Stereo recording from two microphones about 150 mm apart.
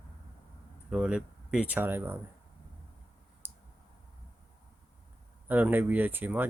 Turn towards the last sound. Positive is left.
turn(degrees=-15)  # may be behind; listen again after turning